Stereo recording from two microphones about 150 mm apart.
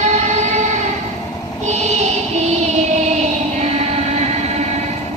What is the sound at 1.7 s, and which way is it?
Music, 50° right (ahead or behind).